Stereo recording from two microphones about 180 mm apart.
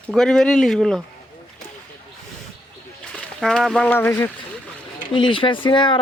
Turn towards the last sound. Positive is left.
turn(degrees=25)  # may be behind; listen again after turning